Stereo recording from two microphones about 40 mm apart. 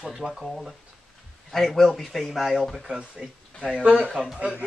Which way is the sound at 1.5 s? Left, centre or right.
Centre.